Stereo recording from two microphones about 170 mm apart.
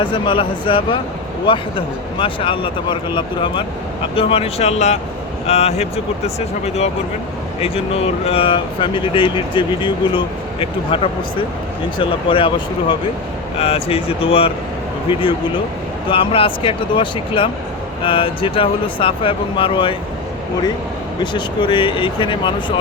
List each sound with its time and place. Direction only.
0.0 s speech: 30° left (ahead or behind)
7.6 s speech: 35° left (ahead or behind)
16.0 s speech: 30° left (ahead or behind)
21.3 s speech: 30° left (ahead or behind)